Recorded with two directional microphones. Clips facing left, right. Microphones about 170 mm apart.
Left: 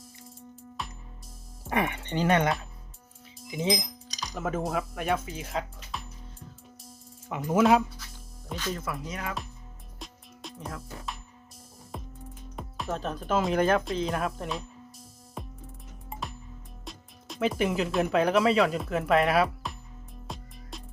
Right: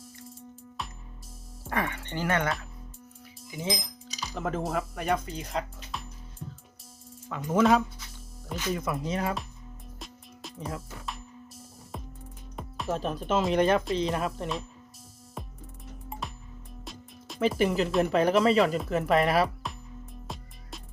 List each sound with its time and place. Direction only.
0.8 s music: centre (ahead or behind)
1.7 s speech: 20° left (ahead or behind)
3.5 s speech: 20° left (ahead or behind)
4.1 s music: 5° right (ahead or behind)
4.4 s speech: 5° left (ahead or behind)
7.3 s speech: 15° left (ahead or behind)
8.4 s speech: 10° right (ahead or behind)
9.0 s speech: 30° right (ahead or behind)
10.0 s music: centre (ahead or behind)
12.5 s speech: centre (ahead or behind)
15.4 s music: centre (ahead or behind)
16.8 s speech: centre (ahead or behind)
20.2 s music: centre (ahead or behind)